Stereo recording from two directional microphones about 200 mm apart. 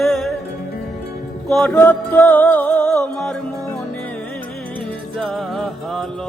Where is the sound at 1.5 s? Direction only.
5° left (ahead or behind).